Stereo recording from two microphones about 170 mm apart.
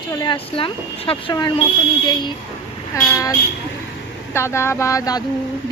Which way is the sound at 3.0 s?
20° left (ahead or behind).